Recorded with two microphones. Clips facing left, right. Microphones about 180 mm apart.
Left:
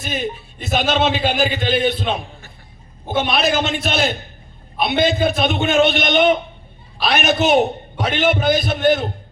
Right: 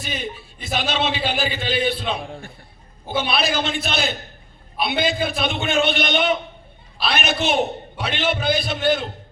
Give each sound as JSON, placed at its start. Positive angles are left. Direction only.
{"t": 0.6, "sound": "a man's voice", "side_deg": 45}